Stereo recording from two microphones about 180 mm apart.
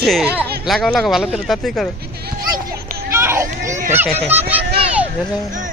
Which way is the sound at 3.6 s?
45° right (ahead or behind).